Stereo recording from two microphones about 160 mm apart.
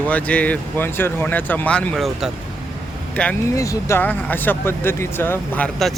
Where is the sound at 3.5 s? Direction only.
20° left (ahead or behind).